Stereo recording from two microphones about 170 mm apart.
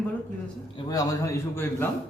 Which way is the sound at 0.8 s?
20° left (ahead or behind).